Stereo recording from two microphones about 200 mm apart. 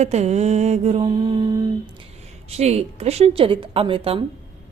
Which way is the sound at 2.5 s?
30° right (ahead or behind).